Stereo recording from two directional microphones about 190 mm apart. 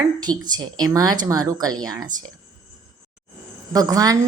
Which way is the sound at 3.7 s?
20° right (ahead or behind).